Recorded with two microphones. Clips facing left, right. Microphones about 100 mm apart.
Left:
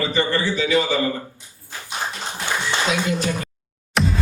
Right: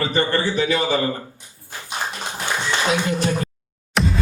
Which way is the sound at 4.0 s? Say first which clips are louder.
Even; centre (ahead or behind).